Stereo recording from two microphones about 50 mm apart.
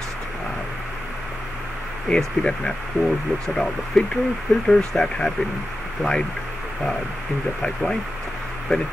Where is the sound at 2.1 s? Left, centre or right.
Centre.